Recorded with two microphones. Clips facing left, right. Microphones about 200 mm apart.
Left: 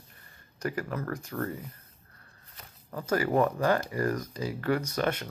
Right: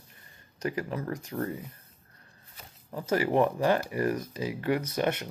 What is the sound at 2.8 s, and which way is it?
Speech, 15° right (ahead or behind).